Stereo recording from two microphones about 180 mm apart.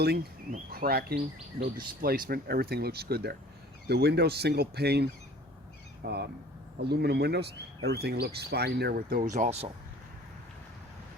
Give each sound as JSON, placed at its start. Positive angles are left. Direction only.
{"t": 0.0, "sound": "speech", "side_deg": -65}